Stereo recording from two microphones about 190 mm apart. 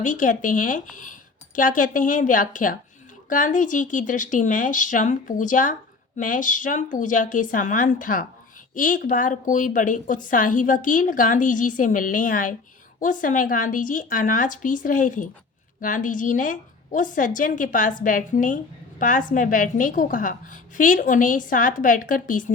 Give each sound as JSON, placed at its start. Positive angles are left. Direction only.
{"t": 0.0, "sound": "a woman's voice", "side_deg": 45}